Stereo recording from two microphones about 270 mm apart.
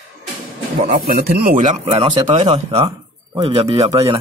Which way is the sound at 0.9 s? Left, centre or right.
Right.